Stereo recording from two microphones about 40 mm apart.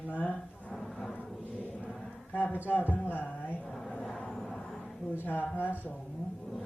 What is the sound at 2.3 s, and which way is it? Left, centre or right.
A man's voice, left.